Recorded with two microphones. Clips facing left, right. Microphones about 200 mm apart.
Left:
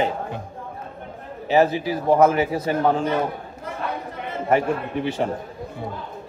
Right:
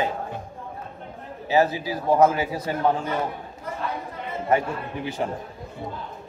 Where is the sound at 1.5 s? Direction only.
25° left (ahead or behind).